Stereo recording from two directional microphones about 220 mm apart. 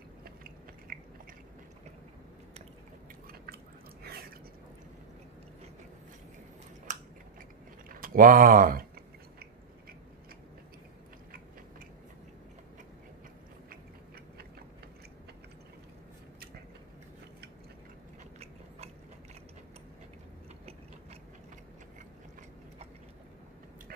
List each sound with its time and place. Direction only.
0.2 s biting: 40° right (ahead or behind)
4.0 s a sound: 45° right (ahead or behind)
6.9 s scissors: 35° right (ahead or behind)
8.0 s speech: 40° right (ahead or behind)